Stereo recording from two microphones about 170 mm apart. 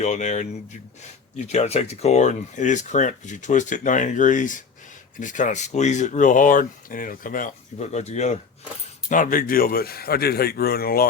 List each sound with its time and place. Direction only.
0.0 s speech: 45° left (ahead or behind); by 11.0 s 65° left (ahead or behind)